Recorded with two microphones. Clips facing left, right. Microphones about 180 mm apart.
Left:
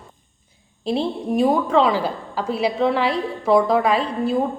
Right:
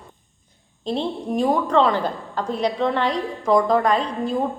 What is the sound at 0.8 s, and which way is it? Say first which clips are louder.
A woman's voice: left 2 dB; 5° left (ahead or behind).